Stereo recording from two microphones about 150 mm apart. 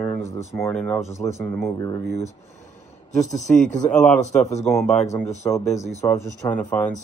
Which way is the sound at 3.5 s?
55° left (ahead or behind).